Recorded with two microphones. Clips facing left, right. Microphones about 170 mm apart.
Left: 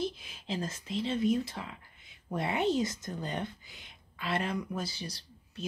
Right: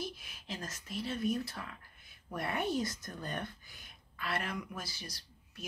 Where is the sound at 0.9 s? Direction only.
25° left (ahead or behind).